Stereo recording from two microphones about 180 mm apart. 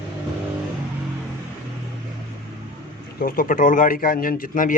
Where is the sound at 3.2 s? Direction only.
55° left (ahead or behind).